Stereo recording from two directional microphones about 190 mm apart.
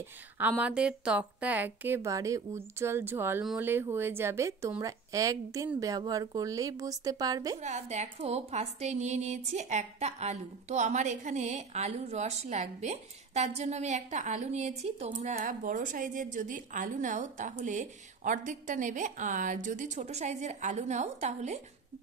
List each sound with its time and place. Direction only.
0.4 s a woman's voice: 10° right (ahead or behind)
7.5 s a woman's voice: 35° right (ahead or behind)